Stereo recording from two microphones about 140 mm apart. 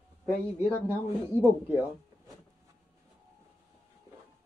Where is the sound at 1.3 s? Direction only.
10° left (ahead or behind).